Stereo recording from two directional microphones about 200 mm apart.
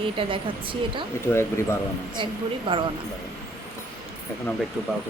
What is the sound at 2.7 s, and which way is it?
Speech, 25° right (ahead or behind).